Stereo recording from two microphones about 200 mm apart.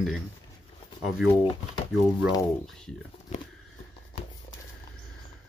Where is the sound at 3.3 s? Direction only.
35° left (ahead or behind).